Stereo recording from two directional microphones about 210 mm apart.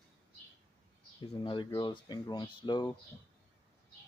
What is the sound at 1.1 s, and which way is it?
Speech, 25° left (ahead or behind).